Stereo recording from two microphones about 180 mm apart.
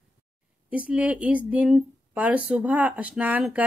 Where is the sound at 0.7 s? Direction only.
10° right (ahead or behind).